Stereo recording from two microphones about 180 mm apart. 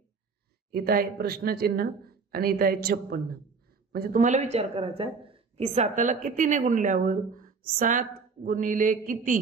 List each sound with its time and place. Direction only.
0.7 s speech: 60° right (ahead or behind)